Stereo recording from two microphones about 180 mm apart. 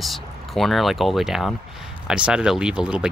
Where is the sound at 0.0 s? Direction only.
Centre (ahead or behind).